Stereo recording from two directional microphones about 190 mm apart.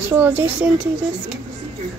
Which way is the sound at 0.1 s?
10° right (ahead or behind).